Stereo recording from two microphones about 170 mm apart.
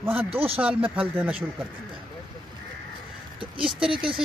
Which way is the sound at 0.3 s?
35° right (ahead or behind).